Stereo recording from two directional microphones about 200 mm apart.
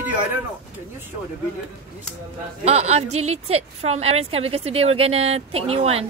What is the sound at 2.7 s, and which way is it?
A woman's voice, 35° right (ahead or behind).